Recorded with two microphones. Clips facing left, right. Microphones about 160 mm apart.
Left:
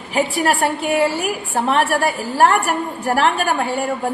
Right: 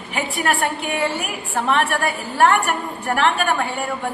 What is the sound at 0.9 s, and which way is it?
A woman's voice, 40° left (ahead or behind).